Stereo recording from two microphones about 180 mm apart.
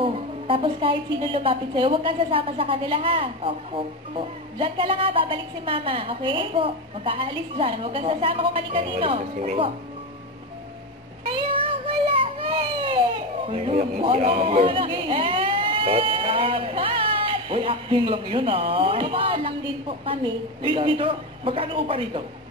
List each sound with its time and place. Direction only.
0.0 s a woman's voice: 30° right (ahead or behind)
11.2 s child singing: 30° right (ahead or behind)
13.5 s a woman's voice: 35° right (ahead or behind)
20.6 s a woman's voice: 30° right (ahead or behind)